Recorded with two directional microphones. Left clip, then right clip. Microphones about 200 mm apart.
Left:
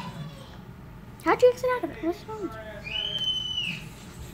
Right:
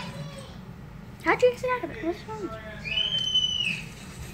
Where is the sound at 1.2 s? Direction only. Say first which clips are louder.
Left 2 dB; 15° left (ahead or behind).